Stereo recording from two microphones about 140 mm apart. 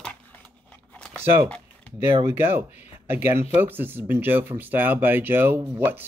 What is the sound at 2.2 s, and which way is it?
Speech, 15° right (ahead or behind).